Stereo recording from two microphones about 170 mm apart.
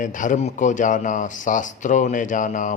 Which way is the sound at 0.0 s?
50° left (ahead or behind).